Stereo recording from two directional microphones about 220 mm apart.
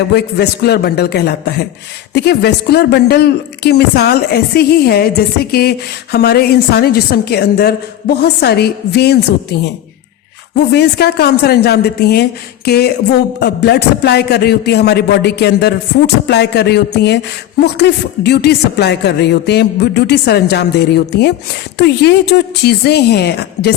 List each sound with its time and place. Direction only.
0.1 s speech: 45° left (ahead or behind)